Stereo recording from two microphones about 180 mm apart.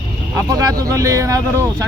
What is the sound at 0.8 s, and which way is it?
Speech, 20° right (ahead or behind).